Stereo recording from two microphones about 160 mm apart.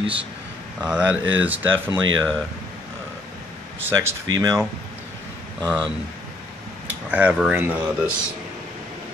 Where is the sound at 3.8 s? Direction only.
20° right (ahead or behind).